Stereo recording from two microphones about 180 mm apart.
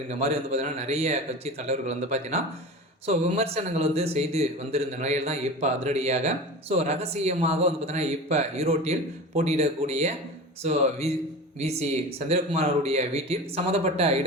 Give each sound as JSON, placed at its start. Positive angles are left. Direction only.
{"t": 0.2, "sound": "a man's voice", "side_deg": -35}